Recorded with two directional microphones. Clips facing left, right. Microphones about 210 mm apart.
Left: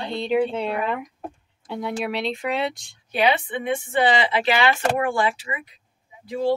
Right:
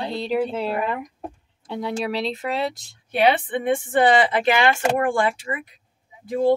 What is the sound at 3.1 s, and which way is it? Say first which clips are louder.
A woman's voice: right 2 dB; 50° right (ahead or behind).